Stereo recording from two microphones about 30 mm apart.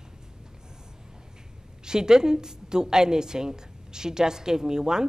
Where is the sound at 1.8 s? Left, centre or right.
Right.